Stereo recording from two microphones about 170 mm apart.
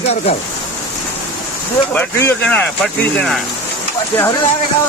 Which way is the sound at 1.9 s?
10° left (ahead or behind).